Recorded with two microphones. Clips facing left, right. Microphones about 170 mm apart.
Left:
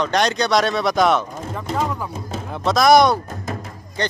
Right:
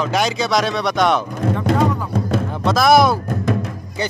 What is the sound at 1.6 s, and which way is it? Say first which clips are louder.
Music: right 4 dB; 65° right (ahead or behind).